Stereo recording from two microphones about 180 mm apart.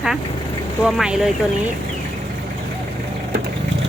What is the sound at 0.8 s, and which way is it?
Speech, 5° right (ahead or behind).